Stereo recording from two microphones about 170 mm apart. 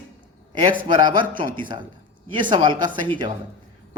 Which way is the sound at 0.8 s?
25° right (ahead or behind).